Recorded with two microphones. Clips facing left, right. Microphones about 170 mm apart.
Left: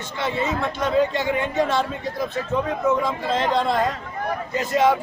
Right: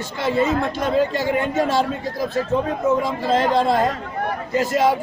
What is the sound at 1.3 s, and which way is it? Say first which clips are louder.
Speech: right 2 dB; 40° right (ahead or behind).